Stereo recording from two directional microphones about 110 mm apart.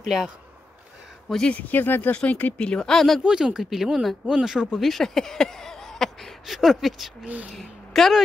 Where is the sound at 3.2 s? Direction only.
5° right (ahead or behind).